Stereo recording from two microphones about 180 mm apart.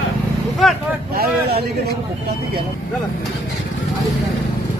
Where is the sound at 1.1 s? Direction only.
60° right (ahead or behind).